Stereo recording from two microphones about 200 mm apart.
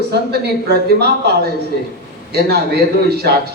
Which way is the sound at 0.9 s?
55° right (ahead or behind).